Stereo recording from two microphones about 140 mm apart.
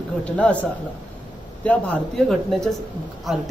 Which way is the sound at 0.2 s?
10° left (ahead or behind).